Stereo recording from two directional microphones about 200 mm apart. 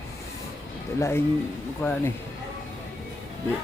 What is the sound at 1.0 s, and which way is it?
Speech, 10° left (ahead or behind).